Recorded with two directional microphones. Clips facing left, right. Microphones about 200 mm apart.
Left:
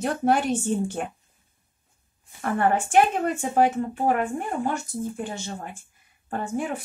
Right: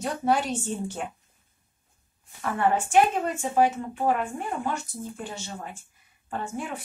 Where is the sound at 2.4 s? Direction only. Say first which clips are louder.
Left 2 dB; 50° left (ahead or behind).